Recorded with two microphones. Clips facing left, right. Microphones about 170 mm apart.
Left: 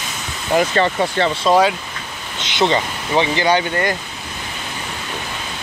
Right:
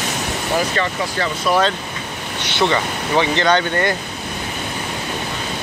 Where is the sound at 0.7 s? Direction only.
25° left (ahead or behind); by 3.9 s 10° left (ahead or behind).